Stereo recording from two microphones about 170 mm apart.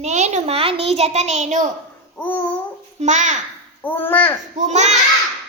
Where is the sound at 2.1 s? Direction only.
10° left (ahead or behind).